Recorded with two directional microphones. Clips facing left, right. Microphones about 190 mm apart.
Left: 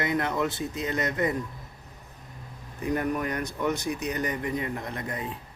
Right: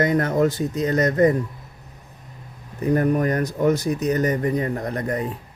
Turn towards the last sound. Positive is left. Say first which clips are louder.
# right 9 dB
turn(degrees=-45)  # may be behind; listen again after turning